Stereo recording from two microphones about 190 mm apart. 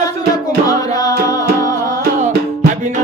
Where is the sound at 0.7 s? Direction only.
20° left (ahead or behind).